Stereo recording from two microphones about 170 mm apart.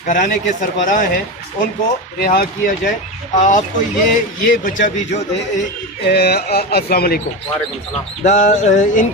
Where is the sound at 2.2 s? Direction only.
60° left (ahead or behind).